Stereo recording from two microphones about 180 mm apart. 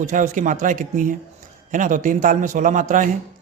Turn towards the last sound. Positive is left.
turn(degrees=-45)  # may be behind; listen again after turning